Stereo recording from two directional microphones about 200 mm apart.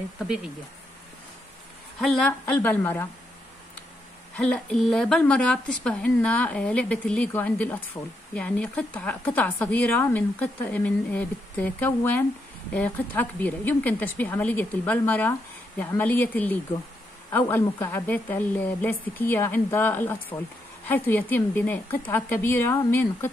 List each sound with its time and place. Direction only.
2.0 s speech: 5° left (ahead or behind)
4.4 s speech: 5° left (ahead or behind)